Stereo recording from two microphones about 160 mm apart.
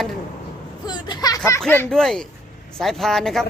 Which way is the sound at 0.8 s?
25° left (ahead or behind).